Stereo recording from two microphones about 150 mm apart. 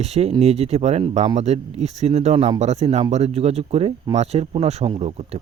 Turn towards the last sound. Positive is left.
turn(degrees=-45)  # may be behind; listen again after turning